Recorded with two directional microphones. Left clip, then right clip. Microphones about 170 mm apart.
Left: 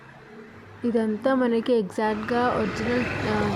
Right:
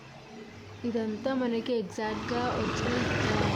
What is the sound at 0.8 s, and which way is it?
Speech, 25° left (ahead or behind).